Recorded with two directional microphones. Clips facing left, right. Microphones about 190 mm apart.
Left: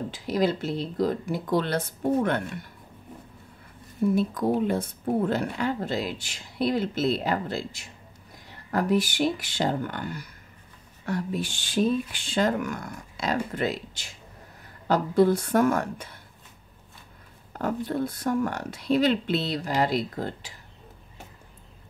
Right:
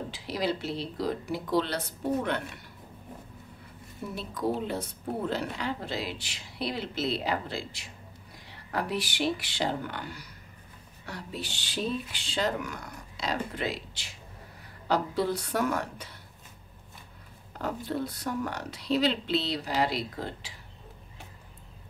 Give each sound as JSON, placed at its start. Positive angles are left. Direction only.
{"t": 0.1, "sound": "speech", "side_deg": 50}
{"t": 4.1, "sound": "speech", "side_deg": 50}
{"t": 17.5, "sound": "speech", "side_deg": 50}